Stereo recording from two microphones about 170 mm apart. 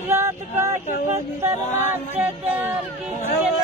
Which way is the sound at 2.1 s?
10° right (ahead or behind).